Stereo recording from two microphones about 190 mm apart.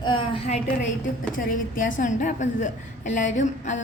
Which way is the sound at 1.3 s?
45° left (ahead or behind).